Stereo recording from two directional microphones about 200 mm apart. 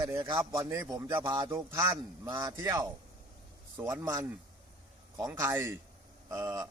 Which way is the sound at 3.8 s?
15° right (ahead or behind).